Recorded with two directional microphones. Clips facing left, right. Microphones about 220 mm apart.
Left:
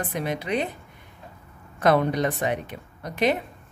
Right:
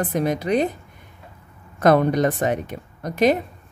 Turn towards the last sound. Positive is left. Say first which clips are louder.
# right 5 dB
turn(degrees=-45)  # may be behind; listen again after turning